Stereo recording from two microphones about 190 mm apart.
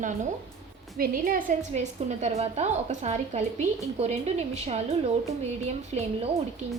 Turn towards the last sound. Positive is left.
turn(degrees=-35)  # may be behind; listen again after turning